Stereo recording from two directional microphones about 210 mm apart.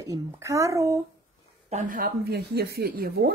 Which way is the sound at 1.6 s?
35° right (ahead or behind).